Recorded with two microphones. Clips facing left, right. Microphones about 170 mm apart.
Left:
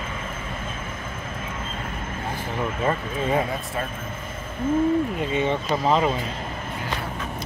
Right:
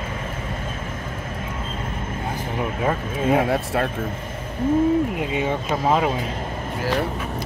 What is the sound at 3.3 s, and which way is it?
Speech, 75° right (ahead or behind).